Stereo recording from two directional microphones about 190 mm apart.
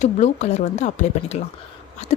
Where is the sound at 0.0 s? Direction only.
40° left (ahead or behind).